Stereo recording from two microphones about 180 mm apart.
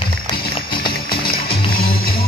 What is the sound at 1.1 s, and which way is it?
Music, 55° left (ahead or behind).